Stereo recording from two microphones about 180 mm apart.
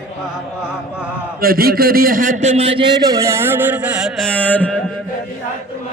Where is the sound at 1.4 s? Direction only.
55° right (ahead or behind); by 2.8 s 35° right (ahead or behind).